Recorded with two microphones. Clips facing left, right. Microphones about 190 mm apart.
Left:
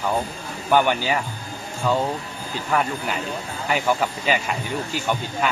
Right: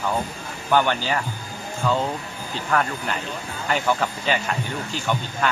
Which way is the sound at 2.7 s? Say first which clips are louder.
Left 1 dB; 10° left (ahead or behind).